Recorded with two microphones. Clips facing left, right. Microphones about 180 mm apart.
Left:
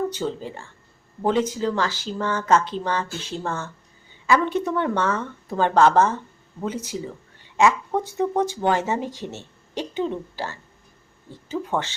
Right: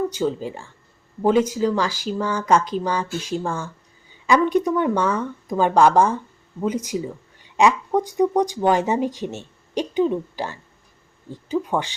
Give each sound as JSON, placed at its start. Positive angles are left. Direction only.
{"t": 0.1, "sound": "speech", "side_deg": -10}